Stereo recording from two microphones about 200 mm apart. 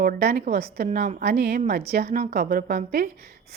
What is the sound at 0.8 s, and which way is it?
Speech, 35° right (ahead or behind).